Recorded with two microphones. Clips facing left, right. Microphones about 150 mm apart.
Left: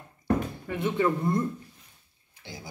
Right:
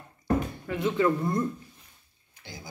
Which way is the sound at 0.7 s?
25° left (ahead or behind).